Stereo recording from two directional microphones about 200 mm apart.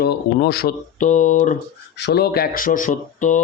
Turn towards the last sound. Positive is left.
turn(degrees=40)  # may be behind; listen again after turning